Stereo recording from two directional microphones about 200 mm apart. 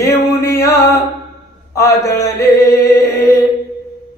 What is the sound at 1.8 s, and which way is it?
Mantra, 15° left (ahead or behind).